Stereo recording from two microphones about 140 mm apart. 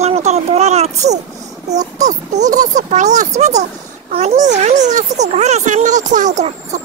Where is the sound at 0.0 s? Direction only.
50° right (ahead or behind).